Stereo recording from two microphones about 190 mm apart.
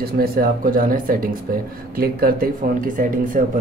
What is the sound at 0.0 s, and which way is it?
Speech, 50° right (ahead or behind).